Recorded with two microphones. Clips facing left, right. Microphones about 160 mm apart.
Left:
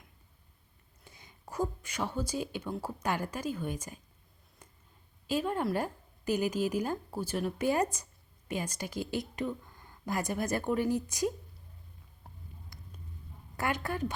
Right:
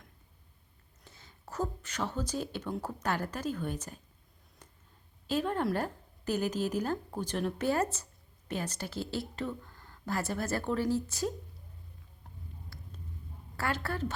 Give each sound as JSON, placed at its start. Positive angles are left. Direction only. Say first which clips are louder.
{"t": 1.0, "sound": "speech", "louder": "left 1 dB", "side_deg": 15}
{"t": 5.3, "sound": "speech", "louder": "even", "side_deg": 10}
{"t": 12.7, "sound": "a sound", "louder": "right 3 dB", "side_deg": 15}
{"t": 13.6, "sound": "speech", "louder": "left 1 dB", "side_deg": 15}